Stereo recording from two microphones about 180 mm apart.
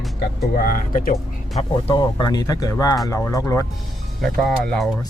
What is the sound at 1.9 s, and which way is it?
Speech, 25° left (ahead or behind).